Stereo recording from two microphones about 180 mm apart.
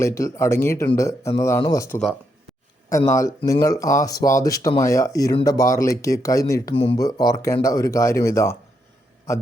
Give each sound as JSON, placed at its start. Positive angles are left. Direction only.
{"t": 0.0, "sound": "speech", "side_deg": 15}
{"t": 3.2, "sound": "speech", "side_deg": 20}